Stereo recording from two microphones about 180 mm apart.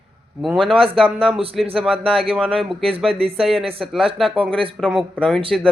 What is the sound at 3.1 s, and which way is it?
Speech, 30° right (ahead or behind).